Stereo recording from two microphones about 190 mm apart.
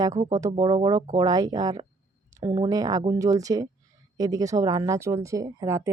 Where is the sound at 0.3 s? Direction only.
20° right (ahead or behind).